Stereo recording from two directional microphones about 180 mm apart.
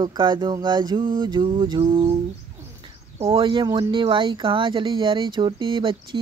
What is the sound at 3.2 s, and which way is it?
Speech, 30° right (ahead or behind).